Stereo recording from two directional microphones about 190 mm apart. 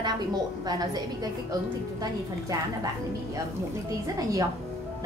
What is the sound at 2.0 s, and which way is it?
A woman's voice, 20° right (ahead or behind).